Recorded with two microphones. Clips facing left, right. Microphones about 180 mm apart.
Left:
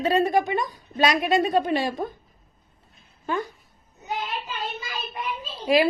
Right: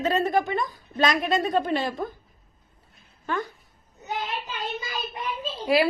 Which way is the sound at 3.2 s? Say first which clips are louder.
Left 2 dB; 15° left (ahead or behind).